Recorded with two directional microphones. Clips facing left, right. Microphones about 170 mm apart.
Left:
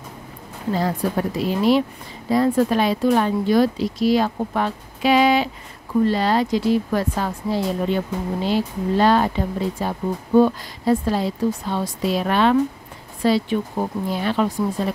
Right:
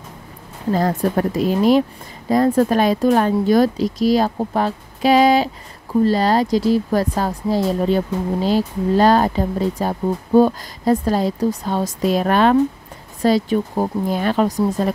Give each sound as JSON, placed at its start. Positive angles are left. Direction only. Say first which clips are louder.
{"t": 0.7, "sound": "a woman's voice", "louder": "right 4 dB", "side_deg": -45}